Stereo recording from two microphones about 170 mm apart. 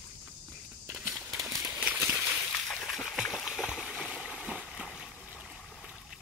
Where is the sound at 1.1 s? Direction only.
Centre (ahead or behind).